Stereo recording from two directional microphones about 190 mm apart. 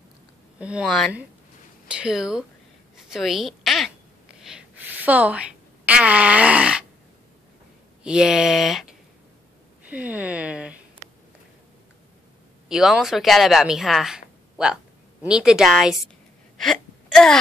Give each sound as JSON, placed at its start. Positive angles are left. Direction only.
{"t": 0.6, "sound": "speech", "side_deg": -5}
{"t": 3.1, "sound": "a sound", "side_deg": 0}
{"t": 8.0, "sound": "speech", "side_deg": -5}
{"t": 9.8, "sound": "a sound", "side_deg": -10}
{"t": 12.6, "sound": "a woman's voice", "side_deg": -5}
{"t": 16.5, "sound": "wail", "side_deg": 0}